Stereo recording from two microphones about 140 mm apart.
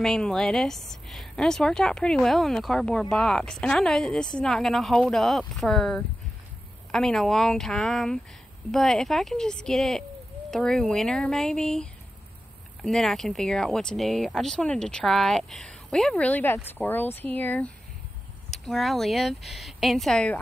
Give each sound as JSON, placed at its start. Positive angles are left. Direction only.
{"t": 0.0, "sound": "speech", "side_deg": 5}